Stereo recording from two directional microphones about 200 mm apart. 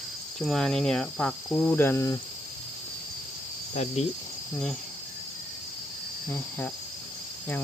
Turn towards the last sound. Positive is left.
turn(degrees=10)  # may be behind; listen again after turning